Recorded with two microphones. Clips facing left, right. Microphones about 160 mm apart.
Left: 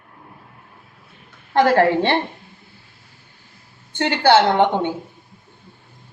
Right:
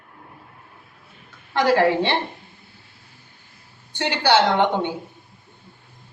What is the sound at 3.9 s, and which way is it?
A woman's voice, 50° left (ahead or behind).